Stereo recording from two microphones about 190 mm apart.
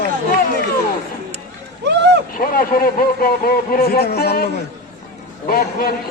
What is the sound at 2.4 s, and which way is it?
Speech, 50° left (ahead or behind).